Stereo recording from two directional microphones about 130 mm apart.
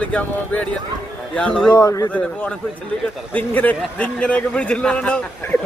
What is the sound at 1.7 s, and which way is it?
Speech, 30° left (ahead or behind).